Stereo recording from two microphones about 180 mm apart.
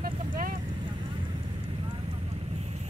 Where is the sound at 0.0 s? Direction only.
50° right (ahead or behind).